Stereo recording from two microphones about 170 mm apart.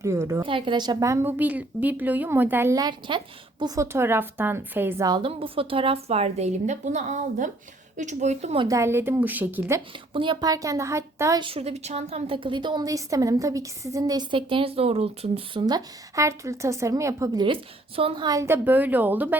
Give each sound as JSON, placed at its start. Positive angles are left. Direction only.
{"t": 0.0, "sound": "a woman's voice", "side_deg": -15}
{"t": 0.4, "sound": "a woman's voice", "side_deg": -30}
{"t": 8.6, "sound": "a woman's voice", "side_deg": -20}
{"t": 10.1, "sound": "a woman's voice", "side_deg": -30}
{"t": 11.4, "sound": "a woman's voice", "side_deg": -35}